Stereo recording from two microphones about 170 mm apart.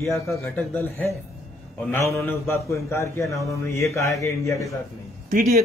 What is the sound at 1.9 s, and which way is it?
Speech, 15° left (ahead or behind).